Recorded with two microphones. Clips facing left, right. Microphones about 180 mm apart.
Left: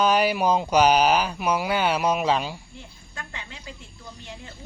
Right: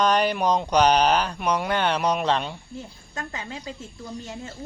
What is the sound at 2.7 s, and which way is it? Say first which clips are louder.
A woman's voice: right 6 dB; 40° right (ahead or behind).